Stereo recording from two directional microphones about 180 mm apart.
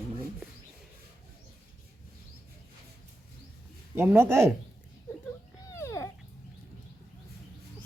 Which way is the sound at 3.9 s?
10° right (ahead or behind).